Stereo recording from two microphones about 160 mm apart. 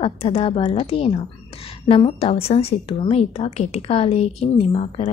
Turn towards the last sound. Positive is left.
turn(degrees=35)  # may be behind; listen again after turning